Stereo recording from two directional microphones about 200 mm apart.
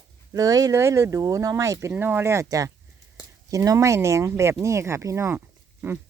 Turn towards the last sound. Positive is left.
turn(degrees=-15)  # may be behind; listen again after turning